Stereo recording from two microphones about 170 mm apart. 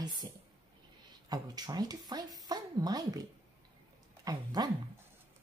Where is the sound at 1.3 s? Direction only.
25° right (ahead or behind).